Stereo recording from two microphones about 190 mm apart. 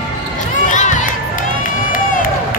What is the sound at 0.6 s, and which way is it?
Crowd, 40° left (ahead or behind).